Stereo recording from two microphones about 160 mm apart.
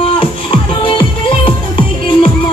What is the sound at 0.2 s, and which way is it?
Music, 30° left (ahead or behind).